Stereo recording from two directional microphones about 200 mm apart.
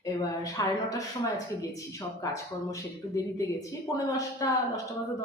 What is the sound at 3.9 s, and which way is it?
Speech, 15° left (ahead or behind).